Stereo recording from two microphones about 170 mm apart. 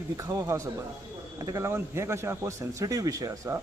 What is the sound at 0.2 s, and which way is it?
A man's voice, 20° right (ahead or behind).